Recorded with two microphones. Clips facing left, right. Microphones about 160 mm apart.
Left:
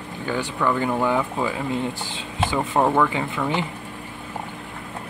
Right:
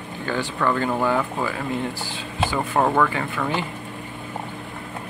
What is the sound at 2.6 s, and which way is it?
Speech, 5° left (ahead or behind).